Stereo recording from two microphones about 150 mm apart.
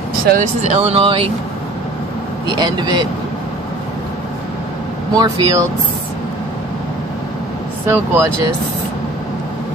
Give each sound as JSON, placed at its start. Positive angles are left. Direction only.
{"t": 0.4, "sound": "speech", "side_deg": -45}
{"t": 2.4, "sound": "speech", "side_deg": -30}
{"t": 5.1, "sound": "speech", "side_deg": -25}
{"t": 7.8, "sound": "speech", "side_deg": -15}